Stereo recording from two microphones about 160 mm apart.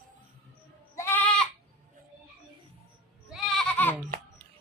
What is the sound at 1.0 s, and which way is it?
Goat, 15° left (ahead or behind).